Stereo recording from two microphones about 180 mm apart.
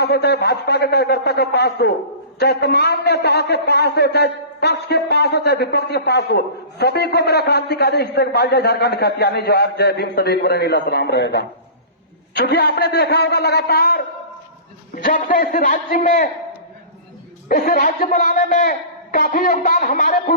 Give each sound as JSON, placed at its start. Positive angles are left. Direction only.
{"t": 0.0, "sound": "a man's voice", "side_deg": 65}
{"t": 17.5, "sound": "a man's voice", "side_deg": 50}